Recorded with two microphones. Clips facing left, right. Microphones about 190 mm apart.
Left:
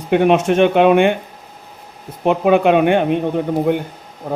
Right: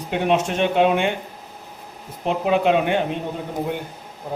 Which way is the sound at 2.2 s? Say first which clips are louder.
Left 6 dB; 60° left (ahead or behind).